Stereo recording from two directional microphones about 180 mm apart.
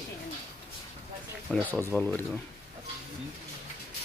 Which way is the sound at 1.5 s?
10° left (ahead or behind).